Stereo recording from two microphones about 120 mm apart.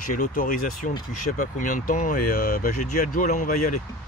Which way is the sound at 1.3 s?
90° left.